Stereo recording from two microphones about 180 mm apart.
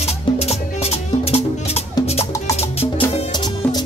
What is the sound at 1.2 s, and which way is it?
Music, 35° left (ahead or behind).